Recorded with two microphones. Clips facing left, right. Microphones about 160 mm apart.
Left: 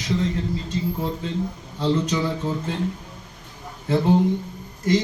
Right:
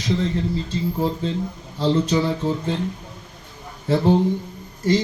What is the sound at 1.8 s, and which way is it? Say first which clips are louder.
Speech: right 3 dB; 30° right (ahead or behind).